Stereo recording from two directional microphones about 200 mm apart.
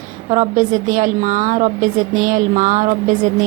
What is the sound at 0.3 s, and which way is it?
A woman's voice, 40° right (ahead or behind).